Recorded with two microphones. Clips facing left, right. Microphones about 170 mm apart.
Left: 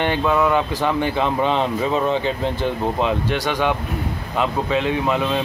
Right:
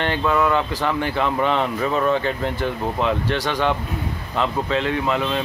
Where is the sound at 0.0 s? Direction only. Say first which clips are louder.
Left 2 dB; 15° left (ahead or behind).